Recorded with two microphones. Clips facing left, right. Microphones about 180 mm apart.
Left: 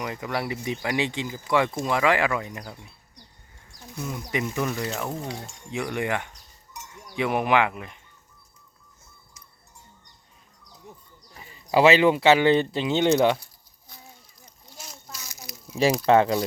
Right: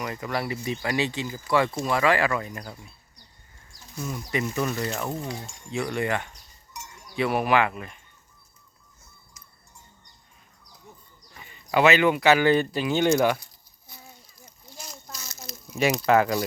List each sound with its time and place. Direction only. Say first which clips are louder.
0.0 s speech: even; 15° left (ahead or behind)
4.0 s speech: even; 15° left (ahead or behind)
4.7 s speech: even; centre (ahead or behind)
5.7 s speech: right 1 dB; 15° left (ahead or behind)
11.3 s speech: left 2 dB; 30° left (ahead or behind)
14.4 s a sound: right 2 dB; centre (ahead or behind)
15.7 s speech: left 2 dB; 30° left (ahead or behind)